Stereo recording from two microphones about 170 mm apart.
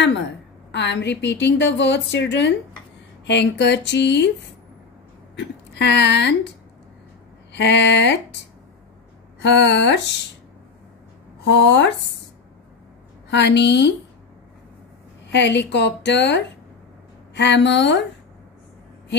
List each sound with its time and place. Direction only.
0.7 s a woman's voice: 90° left
5.3 s speech: 90° left
7.5 s a woman's voice: 90° left
9.4 s a woman's voice: 90° left
11.4 s a woman's voice: 90° left
13.3 s a woman's voice: 90° left
15.2 s a woman's voice: 90° left